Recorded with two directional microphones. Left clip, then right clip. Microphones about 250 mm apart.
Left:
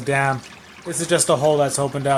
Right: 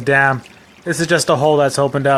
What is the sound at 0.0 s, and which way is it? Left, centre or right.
Speech, right.